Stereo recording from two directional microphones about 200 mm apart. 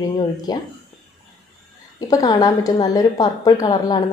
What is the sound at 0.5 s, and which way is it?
Speech, 20° left (ahead or behind).